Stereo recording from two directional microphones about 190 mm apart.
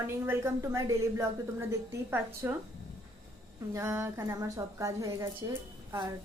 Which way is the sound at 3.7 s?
15° right (ahead or behind).